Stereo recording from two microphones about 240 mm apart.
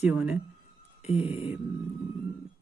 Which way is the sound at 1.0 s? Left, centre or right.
Left.